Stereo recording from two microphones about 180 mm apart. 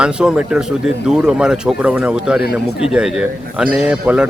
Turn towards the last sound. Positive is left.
turn(degrees=-5)  # may be behind; listen again after turning